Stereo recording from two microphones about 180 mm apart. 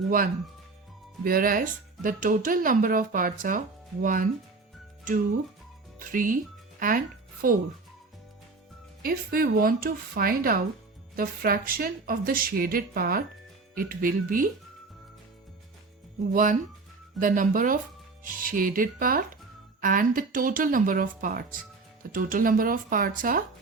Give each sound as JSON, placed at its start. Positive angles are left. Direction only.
{"t": 1.2, "sound": "speech", "side_deg": -55}
{"t": 9.0, "sound": "a woman's voice", "side_deg": -55}
{"t": 16.3, "sound": "speech", "side_deg": -50}